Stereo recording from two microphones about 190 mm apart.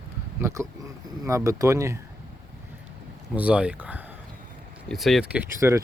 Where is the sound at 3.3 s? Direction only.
5° right (ahead or behind).